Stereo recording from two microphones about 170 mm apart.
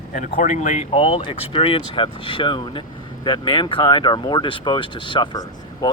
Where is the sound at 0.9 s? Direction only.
35° left (ahead or behind).